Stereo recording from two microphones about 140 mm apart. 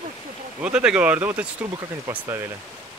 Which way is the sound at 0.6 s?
10° right (ahead or behind).